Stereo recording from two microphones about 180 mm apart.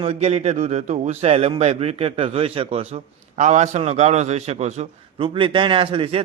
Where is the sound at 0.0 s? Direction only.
35° right (ahead or behind).